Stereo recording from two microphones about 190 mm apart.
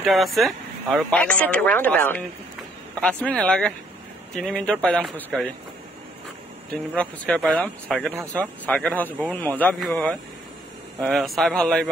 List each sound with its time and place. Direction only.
0.0 s speech: centre (ahead or behind)
7.0 s speech: 5° left (ahead or behind)
8.1 s speech: 15° right (ahead or behind)
8.4 s speech: 5° left (ahead or behind)